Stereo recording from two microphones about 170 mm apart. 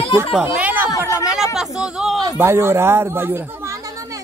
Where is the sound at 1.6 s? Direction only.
5° right (ahead or behind).